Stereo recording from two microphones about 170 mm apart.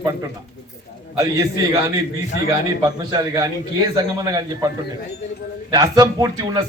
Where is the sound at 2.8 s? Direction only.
20° right (ahead or behind).